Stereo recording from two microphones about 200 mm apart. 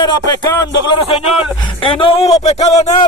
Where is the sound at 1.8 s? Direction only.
25° left (ahead or behind).